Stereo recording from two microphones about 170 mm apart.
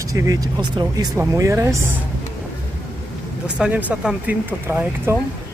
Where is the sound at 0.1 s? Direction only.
20° right (ahead or behind).